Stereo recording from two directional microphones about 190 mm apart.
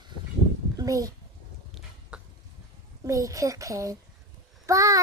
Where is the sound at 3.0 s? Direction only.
15° right (ahead or behind).